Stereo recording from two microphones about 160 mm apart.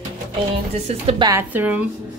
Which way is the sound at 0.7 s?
40° right (ahead or behind).